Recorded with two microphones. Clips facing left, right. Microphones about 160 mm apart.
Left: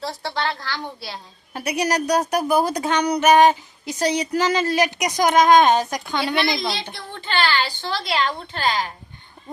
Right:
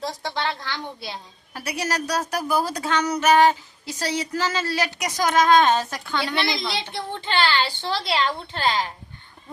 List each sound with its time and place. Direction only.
0.0 s a woman's voice: 15° right (ahead or behind)
1.5 s a woman's voice: 20° left (ahead or behind)
6.9 s a woman's voice: 25° right (ahead or behind)